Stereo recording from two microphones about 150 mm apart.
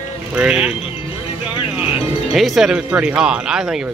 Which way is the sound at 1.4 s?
35° left (ahead or behind).